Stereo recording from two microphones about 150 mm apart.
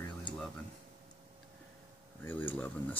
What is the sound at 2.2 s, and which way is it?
Speech, 15° left (ahead or behind).